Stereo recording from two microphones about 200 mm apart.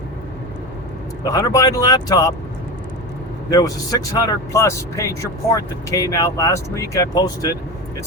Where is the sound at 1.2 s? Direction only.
15° left (ahead or behind).